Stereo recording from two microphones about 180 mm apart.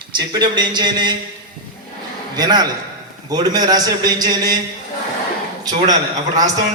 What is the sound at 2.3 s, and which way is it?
A man's voice, 20° right (ahead or behind).